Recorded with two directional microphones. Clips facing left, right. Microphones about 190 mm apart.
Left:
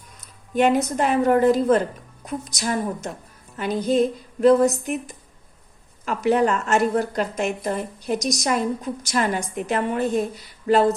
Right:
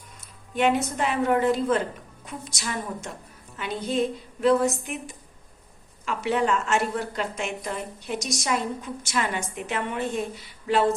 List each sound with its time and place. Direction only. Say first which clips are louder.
0.5 s a woman's voice: left 4 dB; 40° left (ahead or behind)